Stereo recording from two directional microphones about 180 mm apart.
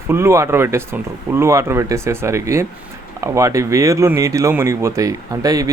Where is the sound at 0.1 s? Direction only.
15° right (ahead or behind).